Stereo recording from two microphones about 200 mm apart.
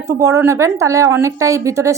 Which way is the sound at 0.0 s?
15° right (ahead or behind).